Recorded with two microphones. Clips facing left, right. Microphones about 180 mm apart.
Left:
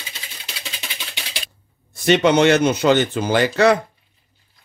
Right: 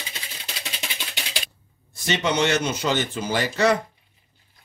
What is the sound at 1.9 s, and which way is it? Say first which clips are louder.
Speech: left 9 dB; 60° left (ahead or behind).